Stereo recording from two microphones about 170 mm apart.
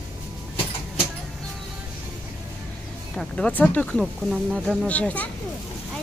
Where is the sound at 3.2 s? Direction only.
5° left (ahead or behind).